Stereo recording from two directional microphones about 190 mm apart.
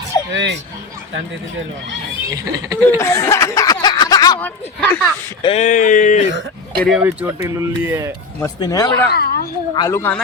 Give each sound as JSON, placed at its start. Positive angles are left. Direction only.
{"t": 0.3, "sound": "speech", "side_deg": -70}
{"t": 2.3, "sound": "speech", "side_deg": -20}
{"t": 3.0, "sound": "speech", "side_deg": 15}
{"t": 4.4, "sound": "speech", "side_deg": 10}
{"t": 5.4, "sound": "speech", "side_deg": 35}
{"t": 6.8, "sound": "speech", "side_deg": -5}
{"t": 8.6, "sound": "speech", "side_deg": 15}
{"t": 9.0, "sound": "speech", "side_deg": 55}
{"t": 9.7, "sound": "speech", "side_deg": 15}